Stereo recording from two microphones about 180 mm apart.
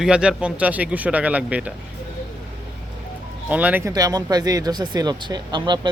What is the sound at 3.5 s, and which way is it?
Speech, 10° right (ahead or behind).